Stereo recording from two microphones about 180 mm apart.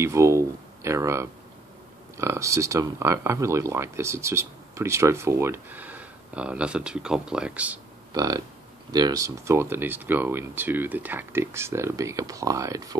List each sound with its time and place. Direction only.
0.0 s speech: 15° right (ahead or behind)
8.1 s speech: 20° right (ahead or behind)